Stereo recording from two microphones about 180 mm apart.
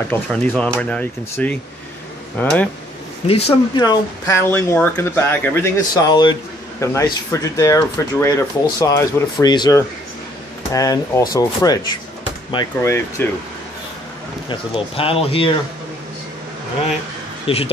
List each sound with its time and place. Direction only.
0.1 s speech: 5° left (ahead or behind)
3.3 s speech: 35° left (ahead or behind)
3.8 s speech: 20° left (ahead or behind)
6.0 s speech: 25° left (ahead or behind)
14.5 s speech: 30° left (ahead or behind)
17.5 s speech: 30° left (ahead or behind)